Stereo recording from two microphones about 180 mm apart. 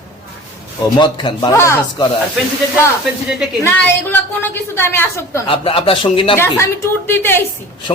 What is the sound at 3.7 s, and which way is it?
A woman's voice, 10° left (ahead or behind).